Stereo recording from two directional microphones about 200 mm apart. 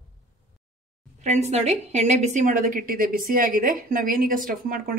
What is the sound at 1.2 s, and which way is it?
A woman's voice, 35° right (ahead or behind).